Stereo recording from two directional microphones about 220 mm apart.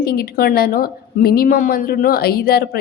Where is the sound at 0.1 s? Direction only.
45° left (ahead or behind).